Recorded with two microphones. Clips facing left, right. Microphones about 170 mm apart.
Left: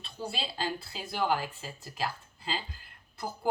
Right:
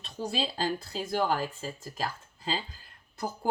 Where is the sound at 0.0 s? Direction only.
40° right (ahead or behind).